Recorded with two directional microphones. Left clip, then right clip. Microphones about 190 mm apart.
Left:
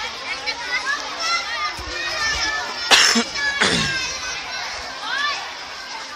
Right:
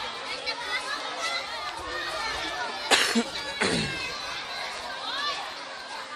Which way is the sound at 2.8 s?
Centre (ahead or behind).